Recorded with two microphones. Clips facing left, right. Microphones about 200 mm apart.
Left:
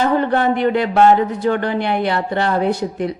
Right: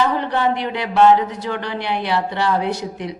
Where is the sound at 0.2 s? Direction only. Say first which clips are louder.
Left 4 dB; 50° left (ahead or behind).